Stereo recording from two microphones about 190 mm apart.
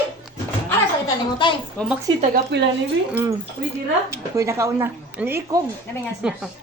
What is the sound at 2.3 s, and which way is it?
Speech, 65° right (ahead or behind).